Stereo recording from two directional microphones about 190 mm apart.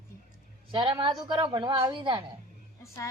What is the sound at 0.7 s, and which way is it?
Speech, 25° right (ahead or behind).